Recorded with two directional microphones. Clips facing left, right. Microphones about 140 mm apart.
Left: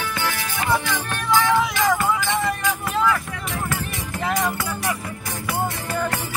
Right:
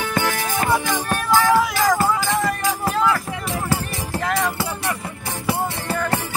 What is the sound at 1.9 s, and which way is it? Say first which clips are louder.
Music: right 2 dB; 35° right (ahead or behind).